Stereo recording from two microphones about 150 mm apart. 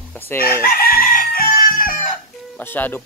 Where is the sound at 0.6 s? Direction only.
75° left (ahead or behind).